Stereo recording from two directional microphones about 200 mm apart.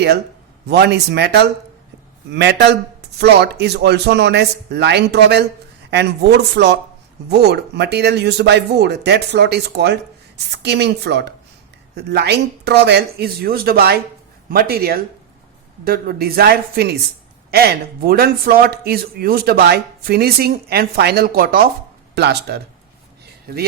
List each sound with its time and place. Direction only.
0.7 s a man's voice: 55° right (ahead or behind)